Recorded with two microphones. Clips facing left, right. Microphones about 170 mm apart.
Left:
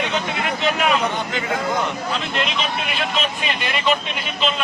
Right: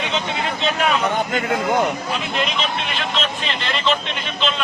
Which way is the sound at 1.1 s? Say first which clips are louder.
Right 4 dB; 50° right (ahead or behind).